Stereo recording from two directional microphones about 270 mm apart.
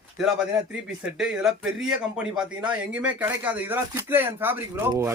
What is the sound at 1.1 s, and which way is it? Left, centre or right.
Speech, centre.